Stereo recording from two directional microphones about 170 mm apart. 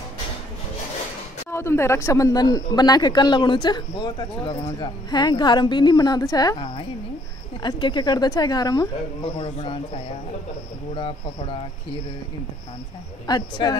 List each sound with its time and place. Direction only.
1.5 s speech: 15° left (ahead or behind)
9.4 s speech: 35° left (ahead or behind)
11.0 s speech: 30° left (ahead or behind)
13.3 s speech: 25° left (ahead or behind)